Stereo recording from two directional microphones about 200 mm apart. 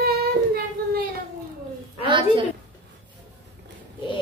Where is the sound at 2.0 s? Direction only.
25° right (ahead or behind).